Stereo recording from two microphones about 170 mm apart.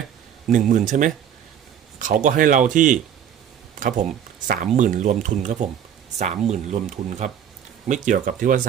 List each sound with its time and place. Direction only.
0.5 s speech: 45° right (ahead or behind)
2.2 s speech: 50° right (ahead or behind)